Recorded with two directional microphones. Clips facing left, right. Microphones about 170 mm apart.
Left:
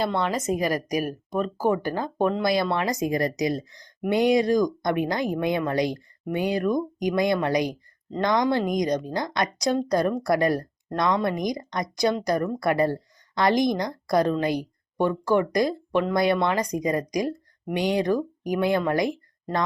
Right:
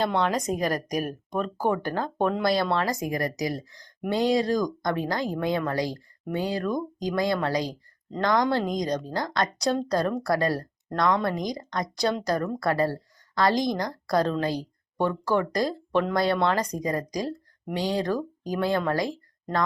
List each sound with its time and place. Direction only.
0.2 s a woman's voice: 5° left (ahead or behind)